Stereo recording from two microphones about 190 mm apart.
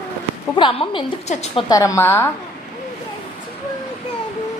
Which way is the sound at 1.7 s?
15° left (ahead or behind).